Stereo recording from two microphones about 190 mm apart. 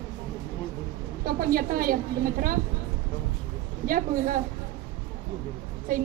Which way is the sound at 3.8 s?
45° right (ahead or behind).